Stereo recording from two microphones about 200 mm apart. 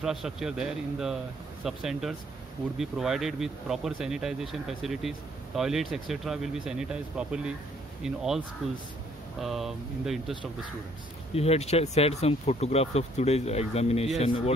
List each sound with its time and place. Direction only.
0.0 s speech: centre (ahead or behind)
11.3 s speech: 30° left (ahead or behind)